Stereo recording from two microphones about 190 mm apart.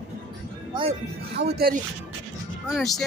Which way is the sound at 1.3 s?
55° right (ahead or behind).